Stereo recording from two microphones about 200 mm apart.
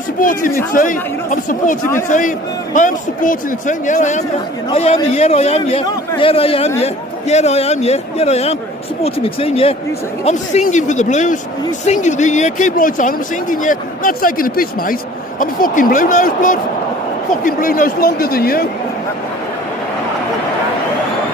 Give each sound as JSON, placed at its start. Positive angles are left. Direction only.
{"t": 0.2, "sound": "a man's voice", "side_deg": 40}